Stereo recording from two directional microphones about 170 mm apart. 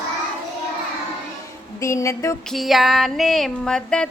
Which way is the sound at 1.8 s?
15° left (ahead or behind).